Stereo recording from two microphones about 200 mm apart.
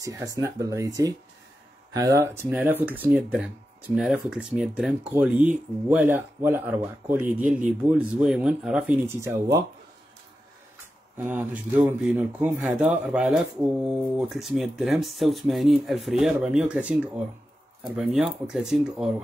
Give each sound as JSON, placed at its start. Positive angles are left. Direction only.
{"t": 0.0, "sound": "speech", "side_deg": -15}
{"t": 9.0, "sound": "speech", "side_deg": -15}
{"t": 11.1, "sound": "speech", "side_deg": -10}